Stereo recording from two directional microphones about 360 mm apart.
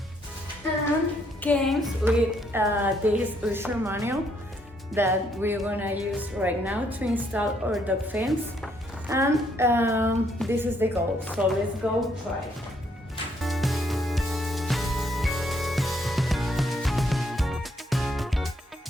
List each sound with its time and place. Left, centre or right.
1.4 s speech: centre
13.4 s music: centre